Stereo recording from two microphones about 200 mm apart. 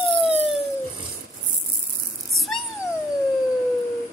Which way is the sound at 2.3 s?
Centre (ahead or behind).